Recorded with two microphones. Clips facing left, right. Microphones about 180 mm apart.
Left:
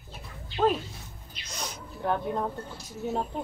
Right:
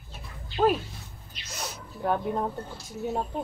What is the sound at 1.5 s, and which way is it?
Snake, 10° right (ahead or behind).